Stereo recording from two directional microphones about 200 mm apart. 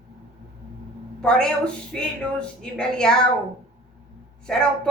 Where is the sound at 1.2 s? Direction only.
5° left (ahead or behind).